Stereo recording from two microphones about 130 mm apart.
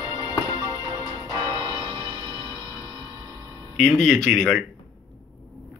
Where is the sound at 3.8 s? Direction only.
5° left (ahead or behind).